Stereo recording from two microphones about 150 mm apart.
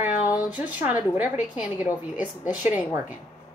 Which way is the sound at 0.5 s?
10° right (ahead or behind).